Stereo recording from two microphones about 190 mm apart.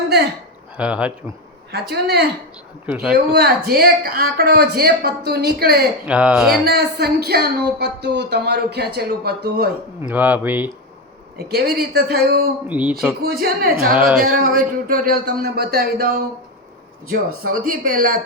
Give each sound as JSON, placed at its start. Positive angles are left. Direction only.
{"t": 0.8, "sound": "speech", "side_deg": -5}
{"t": 1.7, "sound": "speech", "side_deg": -60}
{"t": 2.8, "sound": "speech", "side_deg": -5}
{"t": 3.3, "sound": "speech", "side_deg": -55}
{"t": 6.1, "sound": "speech", "side_deg": -5}
{"t": 6.7, "sound": "speech", "side_deg": -55}
{"t": 10.0, "sound": "speech", "side_deg": -10}
{"t": 11.3, "sound": "speech", "side_deg": -55}
{"t": 12.6, "sound": "speech", "side_deg": -10}
{"t": 13.2, "sound": "speech", "side_deg": -55}
{"t": 13.9, "sound": "speech", "side_deg": -5}
{"t": 14.2, "sound": "speech", "side_deg": -45}